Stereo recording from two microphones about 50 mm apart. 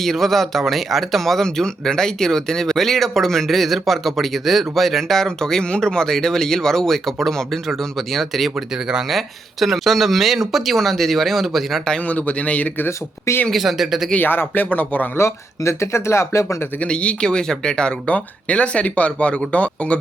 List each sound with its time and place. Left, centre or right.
0.0 s speech: centre
12.0 s speech: left
13.5 s speech: centre
14.2 s speech: left
15.1 s speech: left
16.8 s speech: left